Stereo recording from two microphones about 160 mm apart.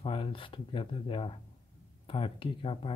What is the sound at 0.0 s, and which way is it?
Speech, 35° left (ahead or behind).